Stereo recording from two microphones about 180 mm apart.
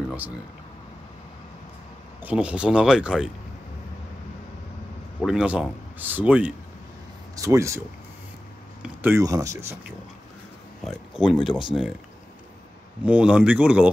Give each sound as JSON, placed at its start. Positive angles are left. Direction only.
{"t": 2.2, "sound": "speech", "side_deg": -5}
{"t": 5.2, "sound": "speech", "side_deg": -5}
{"t": 8.8, "sound": "speech", "side_deg": -10}
{"t": 10.8, "sound": "speech", "side_deg": 0}
{"t": 13.0, "sound": "speech", "side_deg": -5}